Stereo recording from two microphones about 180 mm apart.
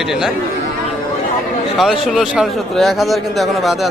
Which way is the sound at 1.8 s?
Centre (ahead or behind).